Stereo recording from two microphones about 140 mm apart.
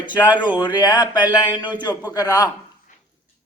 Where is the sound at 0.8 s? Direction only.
30° left (ahead or behind).